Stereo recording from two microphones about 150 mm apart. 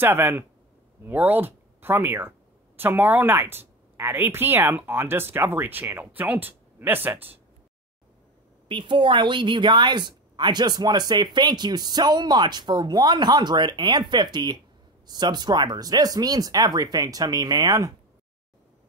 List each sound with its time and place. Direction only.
0.0 s speech: 15° right (ahead or behind)
8.6 s speech: 35° right (ahead or behind)